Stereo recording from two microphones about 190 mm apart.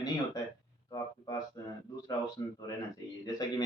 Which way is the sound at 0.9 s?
20° left (ahead or behind).